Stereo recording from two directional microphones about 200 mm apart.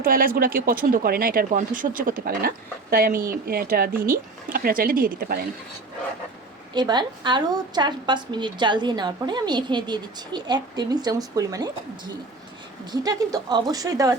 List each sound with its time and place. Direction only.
0.0 s speech: 45° right (ahead or behind)
6.7 s a woman's voice: 20° right (ahead or behind)